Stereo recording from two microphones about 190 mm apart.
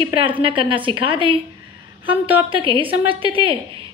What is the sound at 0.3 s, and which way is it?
Speech, 25° right (ahead or behind).